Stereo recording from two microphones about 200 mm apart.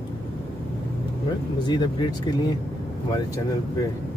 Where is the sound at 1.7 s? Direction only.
20° left (ahead or behind).